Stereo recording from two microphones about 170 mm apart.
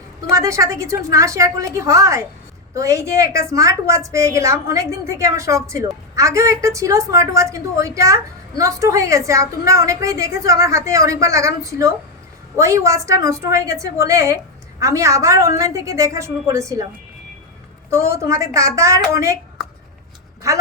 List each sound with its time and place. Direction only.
0.3 s a woman's voice: 20° right (ahead or behind)
17.9 s a woman's voice: 15° right (ahead or behind)
20.4 s a woman's voice: 20° right (ahead or behind)